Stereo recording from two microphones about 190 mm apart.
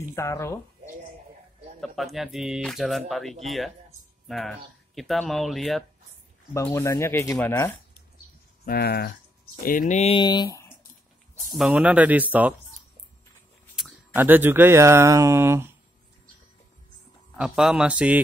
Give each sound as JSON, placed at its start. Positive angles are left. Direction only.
{"t": 0.1, "sound": "speech", "side_deg": 15}
{"t": 1.8, "sound": "speech", "side_deg": 0}
{"t": 6.5, "sound": "speech", "side_deg": 15}
{"t": 8.6, "sound": "speech", "side_deg": 55}
{"t": 11.5, "sound": "speech", "side_deg": -5}
{"t": 13.7, "sound": "speech", "side_deg": -5}
{"t": 17.4, "sound": "speech", "side_deg": -5}